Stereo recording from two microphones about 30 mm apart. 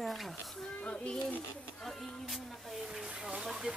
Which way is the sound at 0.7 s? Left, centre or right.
Left.